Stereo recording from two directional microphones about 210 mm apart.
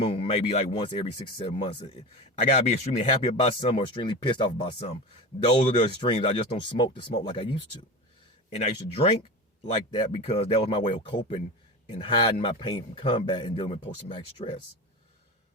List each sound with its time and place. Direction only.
0.0 s a man's voice: 25° left (ahead or behind)